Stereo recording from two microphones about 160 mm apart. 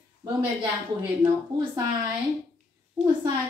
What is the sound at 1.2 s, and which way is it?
Speech, 25° right (ahead or behind).